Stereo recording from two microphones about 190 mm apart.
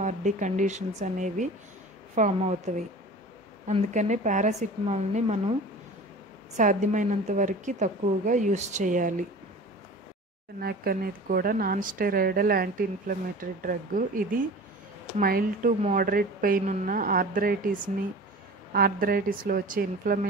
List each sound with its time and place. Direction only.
0.0 s a woman's voice: 40° right (ahead or behind)
6.5 s a woman's voice: 40° right (ahead or behind)
10.6 s a woman's voice: 50° right (ahead or behind)